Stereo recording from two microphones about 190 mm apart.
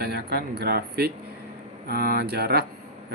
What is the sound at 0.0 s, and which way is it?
Speech, 55° right (ahead or behind).